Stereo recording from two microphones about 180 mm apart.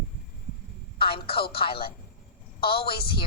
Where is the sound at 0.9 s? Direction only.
30° left (ahead or behind).